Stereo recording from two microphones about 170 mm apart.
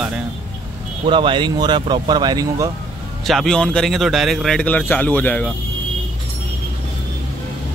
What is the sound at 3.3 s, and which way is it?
Speech, centre (ahead or behind).